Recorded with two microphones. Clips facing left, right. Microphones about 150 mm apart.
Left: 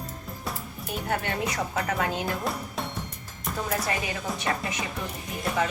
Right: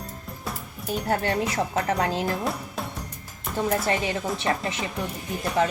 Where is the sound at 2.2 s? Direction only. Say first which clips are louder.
Right 3 dB; centre (ahead or behind).